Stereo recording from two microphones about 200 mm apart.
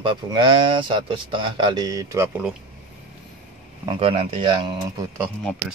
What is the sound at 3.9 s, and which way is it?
Speech, 30° right (ahead or behind).